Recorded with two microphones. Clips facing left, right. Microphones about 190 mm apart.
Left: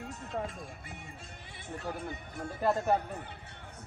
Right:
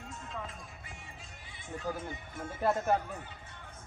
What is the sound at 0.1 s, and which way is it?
Music, 40° left (ahead or behind).